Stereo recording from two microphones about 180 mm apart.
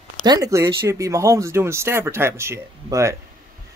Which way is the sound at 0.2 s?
20° right (ahead or behind).